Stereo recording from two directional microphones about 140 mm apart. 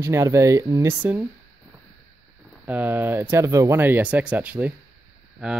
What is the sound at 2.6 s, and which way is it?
Speech, 10° right (ahead or behind).